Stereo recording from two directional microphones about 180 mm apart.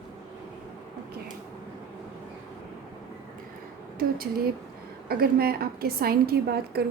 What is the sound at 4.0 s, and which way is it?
A woman's voice, 55° right (ahead or behind).